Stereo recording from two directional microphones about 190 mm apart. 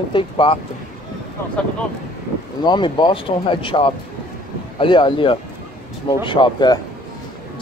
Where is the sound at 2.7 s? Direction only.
25° left (ahead or behind).